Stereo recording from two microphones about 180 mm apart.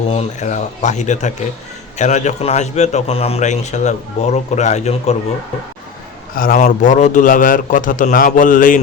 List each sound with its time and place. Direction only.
0.1 s a man's voice: 40° left (ahead or behind)
6.3 s a man's voice: 50° left (ahead or behind)